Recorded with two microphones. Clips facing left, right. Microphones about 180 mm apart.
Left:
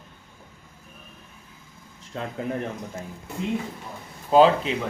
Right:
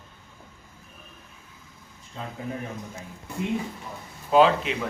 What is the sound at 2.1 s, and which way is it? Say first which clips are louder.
Speech: left 5 dB; 70° left (ahead or behind).